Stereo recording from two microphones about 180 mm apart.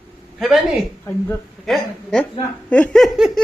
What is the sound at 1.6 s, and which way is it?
A man's voice, 5° left (ahead or behind).